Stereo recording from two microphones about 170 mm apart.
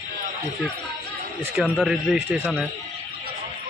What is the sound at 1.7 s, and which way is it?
Speech, centre (ahead or behind).